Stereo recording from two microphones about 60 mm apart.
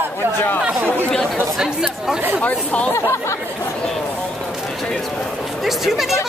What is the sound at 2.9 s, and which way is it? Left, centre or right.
Speech, left.